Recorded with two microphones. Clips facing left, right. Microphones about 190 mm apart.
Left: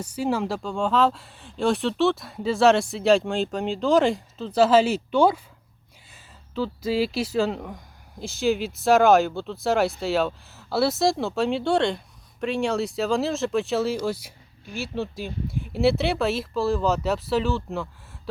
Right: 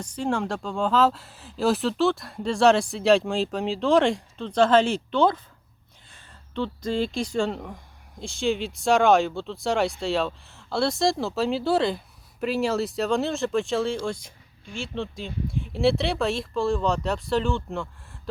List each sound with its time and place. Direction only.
0.0 s speech: 5° left (ahead or behind)